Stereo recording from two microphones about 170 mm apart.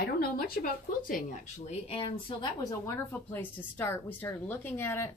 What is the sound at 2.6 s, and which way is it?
A woman's voice, 15° left (ahead or behind).